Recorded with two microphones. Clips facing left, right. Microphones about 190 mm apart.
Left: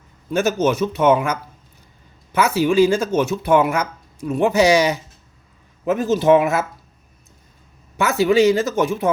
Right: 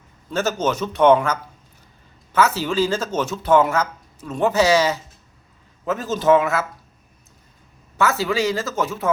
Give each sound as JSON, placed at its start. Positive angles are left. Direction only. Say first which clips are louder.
{"t": 0.3, "sound": "speech", "louder": "left 4 dB", "side_deg": 10}
{"t": 7.9, "sound": "speech", "louder": "left 5 dB", "side_deg": 15}